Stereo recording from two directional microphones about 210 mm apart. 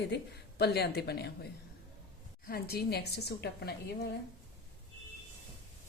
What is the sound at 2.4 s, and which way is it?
A woman's voice, 45° left (ahead or behind).